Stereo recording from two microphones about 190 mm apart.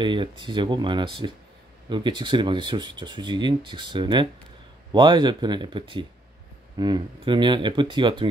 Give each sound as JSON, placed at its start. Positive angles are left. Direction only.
{"t": 0.0, "sound": "speech", "side_deg": -25}